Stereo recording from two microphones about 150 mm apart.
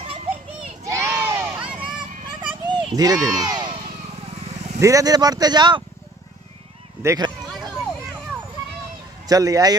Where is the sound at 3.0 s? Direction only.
25° right (ahead or behind).